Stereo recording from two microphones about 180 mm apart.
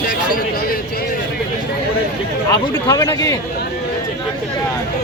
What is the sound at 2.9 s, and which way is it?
Speech, 20° left (ahead or behind).